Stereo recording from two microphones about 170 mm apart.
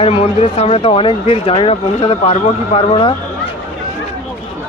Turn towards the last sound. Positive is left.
turn(degrees=30)  # may be behind; listen again after turning